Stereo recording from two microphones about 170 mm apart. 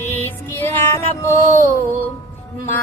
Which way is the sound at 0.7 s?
15° left (ahead or behind).